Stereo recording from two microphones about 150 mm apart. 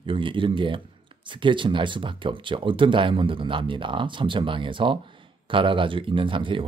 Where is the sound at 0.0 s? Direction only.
35° right (ahead or behind).